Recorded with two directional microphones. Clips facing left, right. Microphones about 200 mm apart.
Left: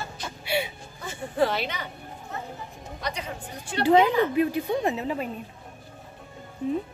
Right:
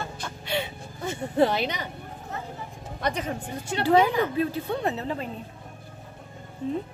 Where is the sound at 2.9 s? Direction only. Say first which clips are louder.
Right 5 dB; 50° right (ahead or behind).